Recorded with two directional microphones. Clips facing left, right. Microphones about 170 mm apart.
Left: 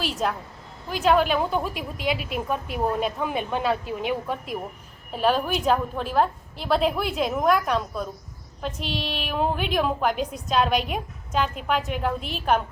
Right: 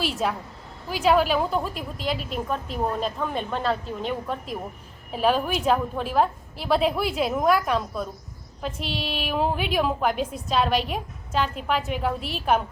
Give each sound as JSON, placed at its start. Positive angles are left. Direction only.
{"t": 0.2, "sound": "a woman's voice", "side_deg": -5}